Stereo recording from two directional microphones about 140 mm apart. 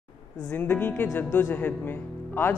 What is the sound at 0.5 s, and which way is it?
Speech, 15° left (ahead or behind).